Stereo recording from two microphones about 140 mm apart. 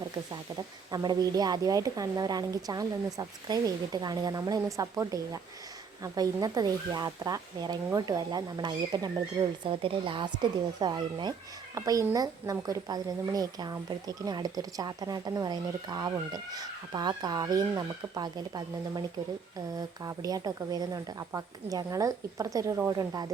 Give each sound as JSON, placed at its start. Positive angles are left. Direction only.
{"t": 0.9, "sound": "a woman's voice", "side_deg": -30}